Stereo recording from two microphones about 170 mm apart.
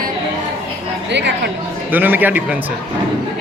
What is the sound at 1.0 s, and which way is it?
Speech, 90° right.